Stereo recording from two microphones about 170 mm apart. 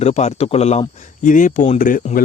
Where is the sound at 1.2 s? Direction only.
50° left (ahead or behind).